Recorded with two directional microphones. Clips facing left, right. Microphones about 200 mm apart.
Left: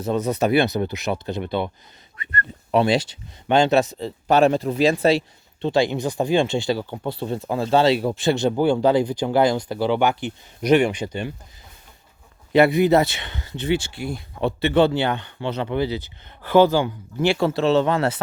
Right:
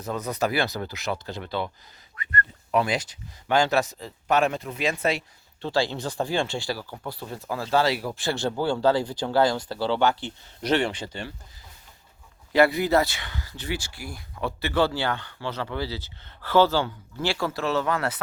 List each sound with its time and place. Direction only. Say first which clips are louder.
0.0 s speech: left 6 dB; 25° left (ahead or behind)
5.6 s speech: left 6 dB; 20° left (ahead or behind)
12.5 s speech: left 5 dB; 20° left (ahead or behind)